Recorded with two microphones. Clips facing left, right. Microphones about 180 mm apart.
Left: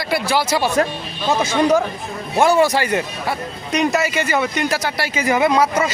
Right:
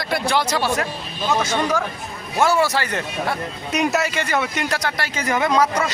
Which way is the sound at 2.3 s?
15° left (ahead or behind).